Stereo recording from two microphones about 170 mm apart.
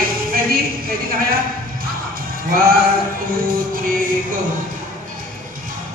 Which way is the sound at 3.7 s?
55° right (ahead or behind).